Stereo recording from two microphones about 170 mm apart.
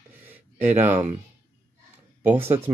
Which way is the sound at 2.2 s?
10° right (ahead or behind).